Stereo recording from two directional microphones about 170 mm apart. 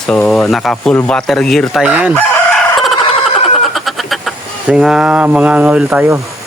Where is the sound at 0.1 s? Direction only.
5° left (ahead or behind).